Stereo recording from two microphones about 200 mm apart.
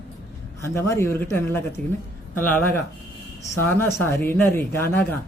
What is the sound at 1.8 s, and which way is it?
Speech, 40° right (ahead or behind).